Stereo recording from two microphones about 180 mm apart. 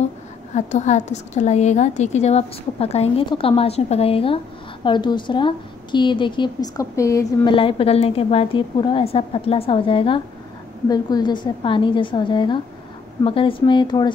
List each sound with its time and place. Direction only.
0.6 s a woman's voice: 40° left (ahead or behind); by 7.5 s 15° left (ahead or behind)
7.5 s a woman's voice: 30° left (ahead or behind)